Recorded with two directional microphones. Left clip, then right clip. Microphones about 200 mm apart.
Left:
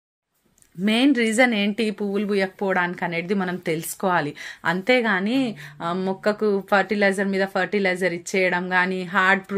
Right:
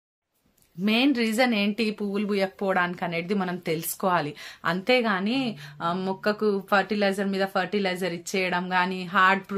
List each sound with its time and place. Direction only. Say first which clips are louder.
0.8 s speech: left 4 dB; 15° left (ahead or behind)